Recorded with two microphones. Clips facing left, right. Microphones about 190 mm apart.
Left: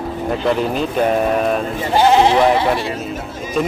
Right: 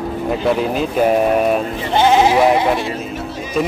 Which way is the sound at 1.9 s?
Centre (ahead or behind).